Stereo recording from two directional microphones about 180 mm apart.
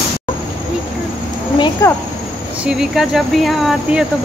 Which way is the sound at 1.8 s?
15° left (ahead or behind).